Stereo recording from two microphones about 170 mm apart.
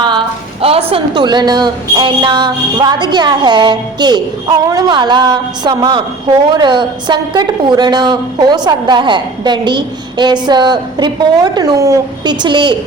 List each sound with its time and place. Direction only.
0.6 s speech: 35° right (ahead or behind)